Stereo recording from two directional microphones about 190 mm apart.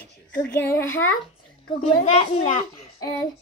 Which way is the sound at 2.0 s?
30° left (ahead or behind).